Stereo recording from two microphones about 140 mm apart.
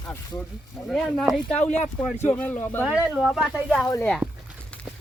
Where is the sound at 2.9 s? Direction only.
5° right (ahead or behind).